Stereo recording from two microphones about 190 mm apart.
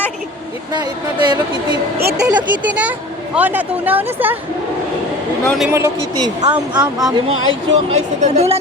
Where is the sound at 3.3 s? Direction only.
10° right (ahead or behind).